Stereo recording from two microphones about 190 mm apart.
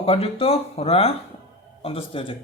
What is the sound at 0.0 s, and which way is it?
Speech, 30° left (ahead or behind).